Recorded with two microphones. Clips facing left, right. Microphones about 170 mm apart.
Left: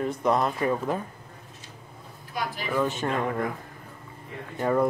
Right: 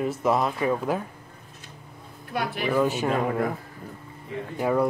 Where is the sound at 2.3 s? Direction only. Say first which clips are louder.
Right 5 dB; 65° right (ahead or behind).